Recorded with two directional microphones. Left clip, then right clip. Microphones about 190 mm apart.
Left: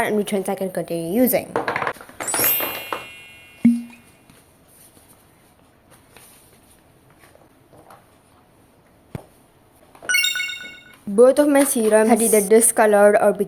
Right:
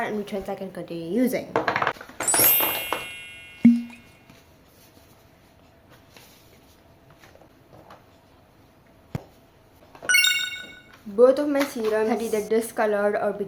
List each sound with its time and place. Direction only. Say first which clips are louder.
0.0 s a woman's voice: left 8 dB; 35° left (ahead or behind)
1.8 s a sound: even; centre (ahead or behind)
10.1 s music: even; centre (ahead or behind)
11.2 s a woman's voice: left 5 dB; 35° left (ahead or behind)